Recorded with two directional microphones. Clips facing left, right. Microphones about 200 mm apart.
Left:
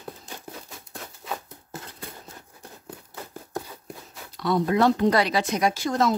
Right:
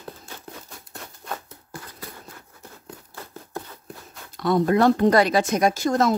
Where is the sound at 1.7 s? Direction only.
25° left (ahead or behind).